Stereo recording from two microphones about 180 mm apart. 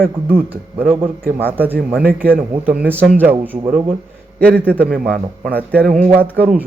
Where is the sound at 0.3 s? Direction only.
10° right (ahead or behind).